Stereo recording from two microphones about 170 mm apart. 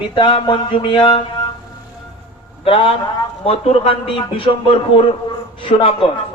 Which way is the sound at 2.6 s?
30° left (ahead or behind).